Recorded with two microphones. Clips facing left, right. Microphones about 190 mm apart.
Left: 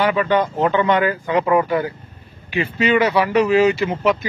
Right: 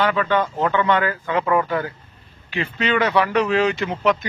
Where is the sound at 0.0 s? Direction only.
15° left (ahead or behind).